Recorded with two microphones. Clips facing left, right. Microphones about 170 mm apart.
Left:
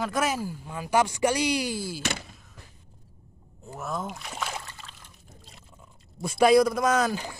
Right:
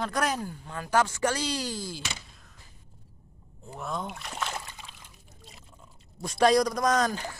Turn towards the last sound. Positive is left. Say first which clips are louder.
# left 1 dB
turn(degrees=5)  # may be behind; listen again after turning